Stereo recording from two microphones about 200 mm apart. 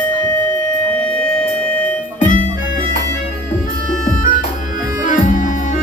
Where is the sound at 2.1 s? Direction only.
40° left (ahead or behind).